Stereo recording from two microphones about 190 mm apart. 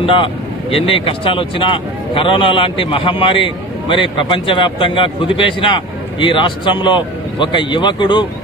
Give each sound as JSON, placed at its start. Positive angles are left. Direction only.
{"t": 0.0, "sound": "speech", "side_deg": 30}